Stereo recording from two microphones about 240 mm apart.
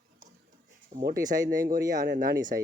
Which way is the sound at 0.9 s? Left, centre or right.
Right.